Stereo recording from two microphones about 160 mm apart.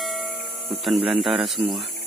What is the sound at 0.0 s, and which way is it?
Hum, centre (ahead or behind).